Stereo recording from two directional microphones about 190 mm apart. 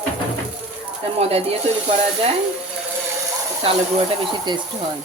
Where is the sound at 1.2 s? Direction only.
30° right (ahead or behind).